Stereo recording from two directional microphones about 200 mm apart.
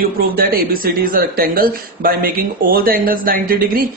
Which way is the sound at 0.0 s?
50° right (ahead or behind).